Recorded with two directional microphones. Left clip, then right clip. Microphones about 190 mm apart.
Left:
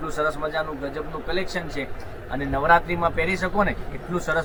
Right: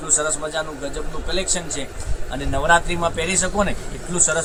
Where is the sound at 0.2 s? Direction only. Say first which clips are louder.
Right 1 dB; 10° right (ahead or behind).